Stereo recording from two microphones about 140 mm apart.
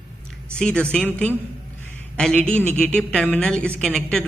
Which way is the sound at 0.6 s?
5° left (ahead or behind).